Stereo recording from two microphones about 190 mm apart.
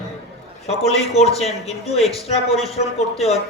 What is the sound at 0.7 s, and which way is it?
A man's voice, 35° left (ahead or behind).